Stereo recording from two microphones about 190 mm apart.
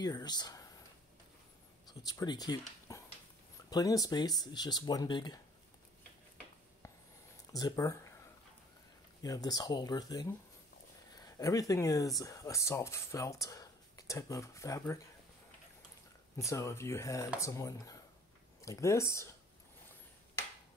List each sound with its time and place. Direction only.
0.0 s speech: 20° left (ahead or behind)
1.9 s speech: 20° left (ahead or behind)
7.5 s speech: 20° left (ahead or behind)
9.2 s speech: 20° left (ahead or behind)
16.4 s speech: 15° left (ahead or behind)